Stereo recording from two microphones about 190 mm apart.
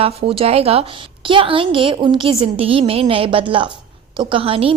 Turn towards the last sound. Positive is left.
turn(degrees=-30)  # may be behind; listen again after turning